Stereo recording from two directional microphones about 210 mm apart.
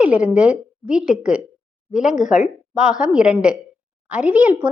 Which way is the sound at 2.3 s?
5° right (ahead or behind).